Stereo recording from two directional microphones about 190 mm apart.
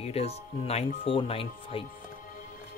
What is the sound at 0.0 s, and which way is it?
Speech, 30° left (ahead or behind).